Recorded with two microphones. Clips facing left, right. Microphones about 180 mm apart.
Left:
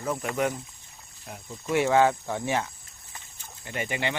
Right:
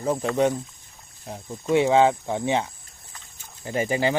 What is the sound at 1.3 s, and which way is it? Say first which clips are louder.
Speech: right 6 dB; 25° right (ahead or behind).